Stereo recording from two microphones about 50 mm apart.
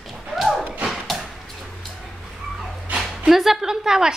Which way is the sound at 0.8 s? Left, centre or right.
Centre.